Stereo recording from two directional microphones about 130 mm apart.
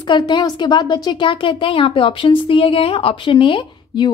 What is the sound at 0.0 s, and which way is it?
Speech, 35° left (ahead or behind).